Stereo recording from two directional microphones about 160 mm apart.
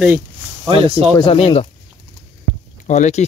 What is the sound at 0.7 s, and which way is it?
Speech, 40° right (ahead or behind).